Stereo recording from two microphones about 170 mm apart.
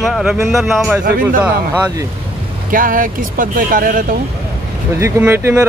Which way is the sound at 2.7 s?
55° right (ahead or behind).